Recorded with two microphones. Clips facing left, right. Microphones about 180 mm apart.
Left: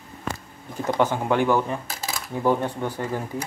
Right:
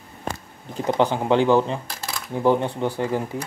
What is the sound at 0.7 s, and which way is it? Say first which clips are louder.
Speech: right 2 dB; 20° right (ahead or behind).